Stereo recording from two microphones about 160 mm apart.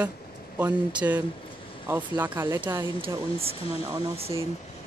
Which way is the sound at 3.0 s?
35° right (ahead or behind).